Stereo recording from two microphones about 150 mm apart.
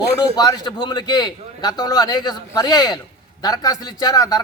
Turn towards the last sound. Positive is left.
turn(degrees=25)  # may be behind; listen again after turning